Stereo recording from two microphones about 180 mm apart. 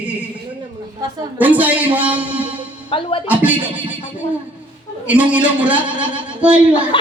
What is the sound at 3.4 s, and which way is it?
Speech, 10° right (ahead or behind).